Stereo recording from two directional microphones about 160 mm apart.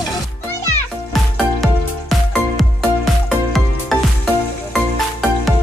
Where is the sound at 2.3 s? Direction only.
Centre (ahead or behind).